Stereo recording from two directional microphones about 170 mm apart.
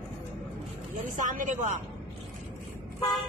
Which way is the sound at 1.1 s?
50° right (ahead or behind).